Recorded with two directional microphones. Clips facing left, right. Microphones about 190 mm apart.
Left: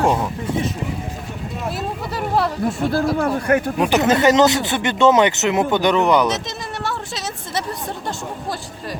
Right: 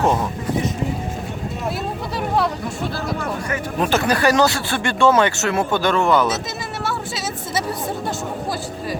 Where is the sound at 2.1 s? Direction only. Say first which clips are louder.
Even; centre (ahead or behind).